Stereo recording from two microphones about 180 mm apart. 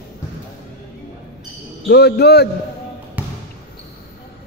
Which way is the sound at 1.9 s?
65° left (ahead or behind).